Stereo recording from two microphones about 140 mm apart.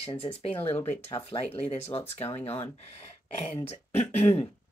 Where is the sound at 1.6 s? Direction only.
50° left (ahead or behind).